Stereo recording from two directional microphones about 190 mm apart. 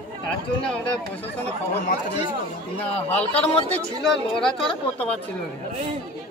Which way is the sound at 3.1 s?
10° left (ahead or behind).